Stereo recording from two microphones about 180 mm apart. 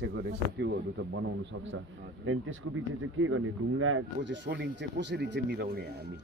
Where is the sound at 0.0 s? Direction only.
70° right (ahead or behind).